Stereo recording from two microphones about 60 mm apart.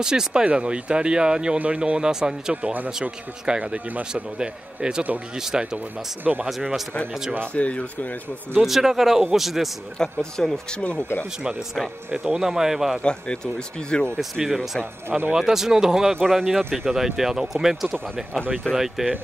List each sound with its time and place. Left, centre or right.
0.0 s speech: centre
2.5 s speech: right
3.0 s speech: centre
7.5 s speech: left
8.5 s speech: centre
9.9 s speech: centre
12.4 s speech: centre
13.9 s speech: centre
14.4 s speech: centre
15.0 s speech: right
15.3 s speech: centre
16.3 s speech: centre
19.0 s speech: centre